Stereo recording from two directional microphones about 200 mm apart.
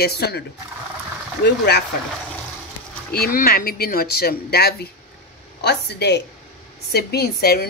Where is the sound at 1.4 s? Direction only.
55° left (ahead or behind).